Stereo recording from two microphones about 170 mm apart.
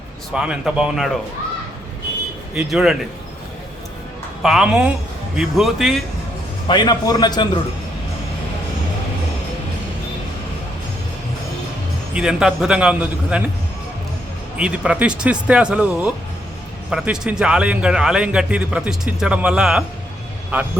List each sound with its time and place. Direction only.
0.3 s a man's voice: 5° right (ahead or behind)
2.6 s a man's voice: 5° right (ahead or behind)
4.4 s a man's voice: 5° right (ahead or behind)
6.7 s a man's voice: 25° left (ahead or behind)
12.1 s a man's voice: 5° right (ahead or behind)
14.6 s a man's voice: 5° right (ahead or behind)